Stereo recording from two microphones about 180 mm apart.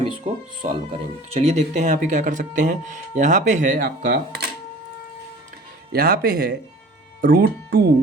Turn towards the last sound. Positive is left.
turn(degrees=-60)  # may be behind; listen again after turning